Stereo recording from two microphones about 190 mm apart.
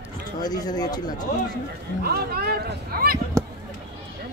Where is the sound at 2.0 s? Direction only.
55° right (ahead or behind).